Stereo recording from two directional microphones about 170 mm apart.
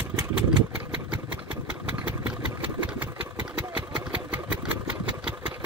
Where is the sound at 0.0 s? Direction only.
10° right (ahead or behind).